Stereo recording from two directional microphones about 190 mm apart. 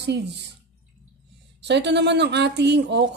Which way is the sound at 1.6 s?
65° right (ahead or behind).